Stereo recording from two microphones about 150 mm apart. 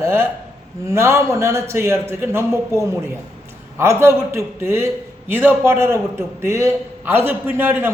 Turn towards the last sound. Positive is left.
turn(degrees=-15)  # may be behind; listen again after turning